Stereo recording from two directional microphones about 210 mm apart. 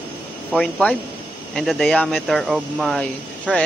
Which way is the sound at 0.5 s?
Centre (ahead or behind).